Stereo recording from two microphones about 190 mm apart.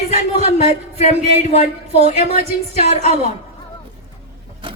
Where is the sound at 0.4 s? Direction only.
35° left (ahead or behind).